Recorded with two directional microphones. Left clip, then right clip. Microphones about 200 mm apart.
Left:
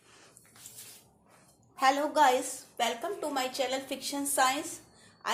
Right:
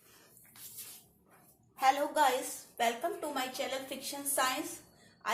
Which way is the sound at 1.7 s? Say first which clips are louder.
Left 3 dB; 45° left (ahead or behind).